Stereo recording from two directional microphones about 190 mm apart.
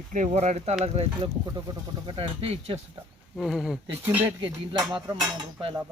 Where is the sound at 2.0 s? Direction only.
30° right (ahead or behind).